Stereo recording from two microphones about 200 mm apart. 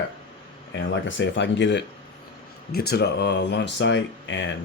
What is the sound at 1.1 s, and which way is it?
Speech, 65° left (ahead or behind).